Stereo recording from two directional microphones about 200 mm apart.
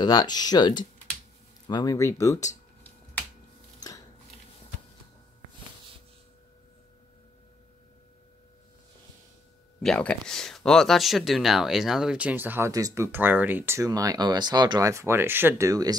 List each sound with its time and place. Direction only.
0.0 s speech: 20° left (ahead or behind)
1.7 s finger snapping: 20° left (ahead or behind)
9.8 s speech: 5° left (ahead or behind); by 15.9 s 15° right (ahead or behind)